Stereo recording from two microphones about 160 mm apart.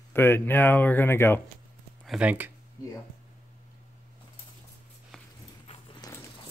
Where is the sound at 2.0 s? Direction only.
5° right (ahead or behind).